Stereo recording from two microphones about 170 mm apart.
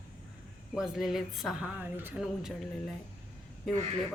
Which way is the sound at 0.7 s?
Centre (ahead or behind).